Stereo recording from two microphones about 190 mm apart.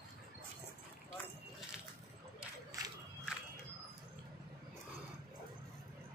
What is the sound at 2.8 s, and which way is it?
Crowd, 20° right (ahead or behind).